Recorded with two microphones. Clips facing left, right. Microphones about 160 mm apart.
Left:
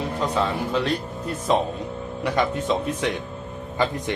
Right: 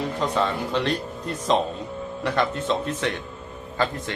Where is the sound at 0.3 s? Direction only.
5° left (ahead or behind).